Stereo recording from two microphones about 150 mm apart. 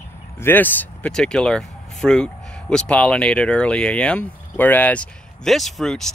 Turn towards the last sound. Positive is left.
turn(degrees=0)  # may be behind; listen again after turning